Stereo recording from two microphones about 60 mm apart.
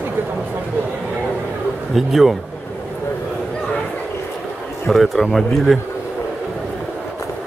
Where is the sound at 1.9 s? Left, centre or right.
Centre.